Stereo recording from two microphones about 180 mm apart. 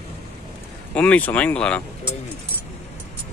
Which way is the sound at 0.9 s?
5° left (ahead or behind).